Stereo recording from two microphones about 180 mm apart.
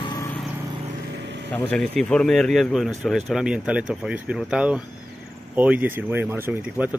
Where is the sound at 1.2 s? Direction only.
75° right (ahead or behind).